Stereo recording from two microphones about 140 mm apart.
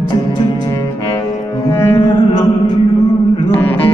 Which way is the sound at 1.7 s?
20° left (ahead or behind).